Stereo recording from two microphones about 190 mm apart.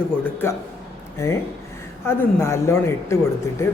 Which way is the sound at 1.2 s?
15° left (ahead or behind).